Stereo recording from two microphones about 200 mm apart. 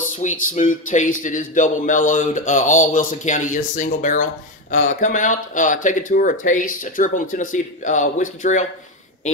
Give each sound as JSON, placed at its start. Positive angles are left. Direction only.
{"t": 0.2, "sound": "speech", "side_deg": 40}